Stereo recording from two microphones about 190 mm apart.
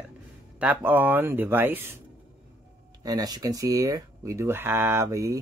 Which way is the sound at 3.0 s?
20° right (ahead or behind).